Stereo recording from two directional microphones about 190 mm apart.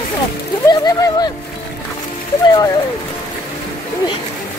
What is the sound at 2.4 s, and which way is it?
Speech, 25° left (ahead or behind).